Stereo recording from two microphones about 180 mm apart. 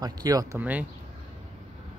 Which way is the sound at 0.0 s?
20° right (ahead or behind).